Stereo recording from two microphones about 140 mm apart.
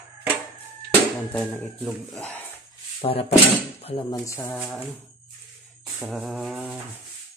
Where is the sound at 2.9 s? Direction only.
40° left (ahead or behind).